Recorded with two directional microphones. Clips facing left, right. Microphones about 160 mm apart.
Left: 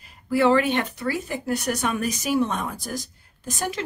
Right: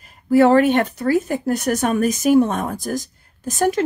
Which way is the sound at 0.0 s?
45° right (ahead or behind).